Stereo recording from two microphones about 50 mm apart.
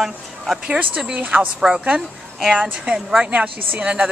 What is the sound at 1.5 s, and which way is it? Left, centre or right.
A woman's voice, centre.